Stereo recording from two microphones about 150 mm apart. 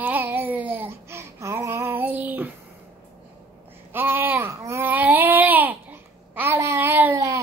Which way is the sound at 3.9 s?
15° right (ahead or behind).